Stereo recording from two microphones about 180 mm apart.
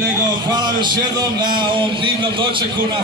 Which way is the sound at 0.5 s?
25° right (ahead or behind).